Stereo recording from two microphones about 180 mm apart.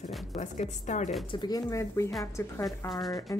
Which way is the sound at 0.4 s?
40° left (ahead or behind).